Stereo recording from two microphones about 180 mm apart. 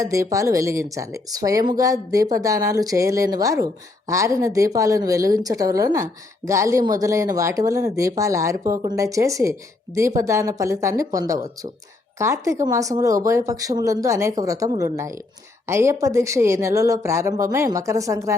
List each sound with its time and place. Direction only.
0.0 s a woman's voice: 20° right (ahead or behind)